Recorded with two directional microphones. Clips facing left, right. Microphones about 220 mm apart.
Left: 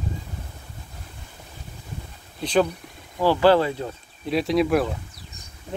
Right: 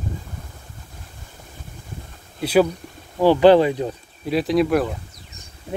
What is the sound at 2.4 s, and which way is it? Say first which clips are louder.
Speech: right 4 dB; 10° right (ahead or behind).